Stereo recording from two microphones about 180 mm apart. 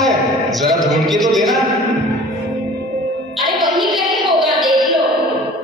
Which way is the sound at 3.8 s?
Centre (ahead or behind).